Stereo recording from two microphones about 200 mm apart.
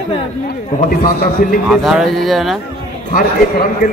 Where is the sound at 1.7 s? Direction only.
Centre (ahead or behind).